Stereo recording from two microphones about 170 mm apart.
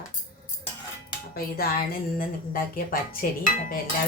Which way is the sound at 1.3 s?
60° left (ahead or behind).